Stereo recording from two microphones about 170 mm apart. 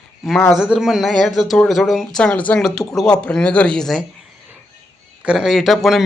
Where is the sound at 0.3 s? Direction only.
5° left (ahead or behind).